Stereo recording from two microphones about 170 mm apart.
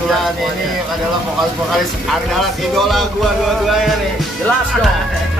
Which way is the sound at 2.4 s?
Centre (ahead or behind).